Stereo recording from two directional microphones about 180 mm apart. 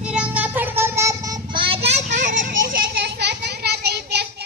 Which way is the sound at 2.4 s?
50° right (ahead or behind).